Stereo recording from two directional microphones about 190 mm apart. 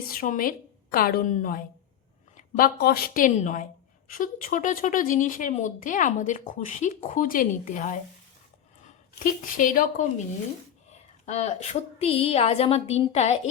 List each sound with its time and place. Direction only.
0.1 s a woman's voice: 50° left (ahead or behind)